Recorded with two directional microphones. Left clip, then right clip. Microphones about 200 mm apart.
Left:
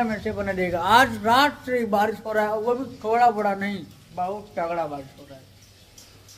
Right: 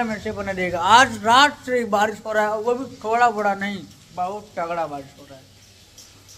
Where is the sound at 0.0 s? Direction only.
5° left (ahead or behind).